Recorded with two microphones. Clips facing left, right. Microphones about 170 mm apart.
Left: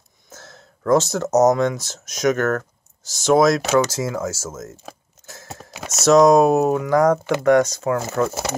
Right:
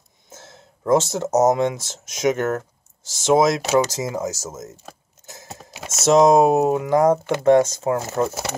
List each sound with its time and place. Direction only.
0.3 s speech: 25° right (ahead or behind)